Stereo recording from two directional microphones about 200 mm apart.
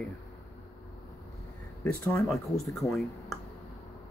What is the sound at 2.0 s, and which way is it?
Speech, 5° left (ahead or behind).